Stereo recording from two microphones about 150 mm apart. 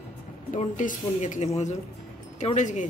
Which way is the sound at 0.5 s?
50° left (ahead or behind).